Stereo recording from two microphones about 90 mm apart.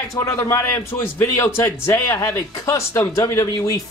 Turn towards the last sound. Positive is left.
turn(degrees=40)  # may be behind; listen again after turning